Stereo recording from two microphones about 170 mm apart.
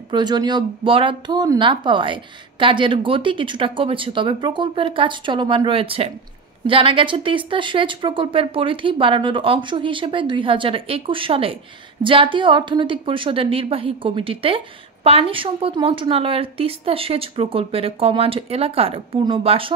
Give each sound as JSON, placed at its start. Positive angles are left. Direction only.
{"t": 0.1, "sound": "speech", "side_deg": -25}